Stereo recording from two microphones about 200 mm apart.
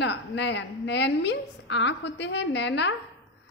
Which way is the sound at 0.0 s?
60° left (ahead or behind).